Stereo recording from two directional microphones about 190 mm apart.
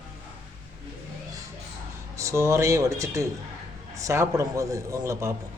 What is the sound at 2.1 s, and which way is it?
Speech, 15° right (ahead or behind).